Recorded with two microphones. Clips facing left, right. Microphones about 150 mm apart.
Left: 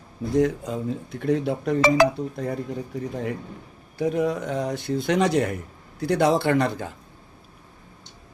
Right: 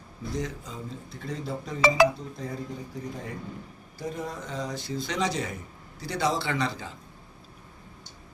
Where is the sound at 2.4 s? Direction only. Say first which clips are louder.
Left 7 dB; 65° left (ahead or behind).